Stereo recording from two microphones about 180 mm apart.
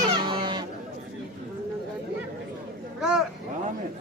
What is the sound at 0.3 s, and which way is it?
Chicken, 25° right (ahead or behind).